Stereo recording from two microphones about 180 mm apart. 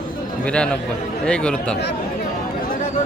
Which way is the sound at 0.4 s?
5° left (ahead or behind).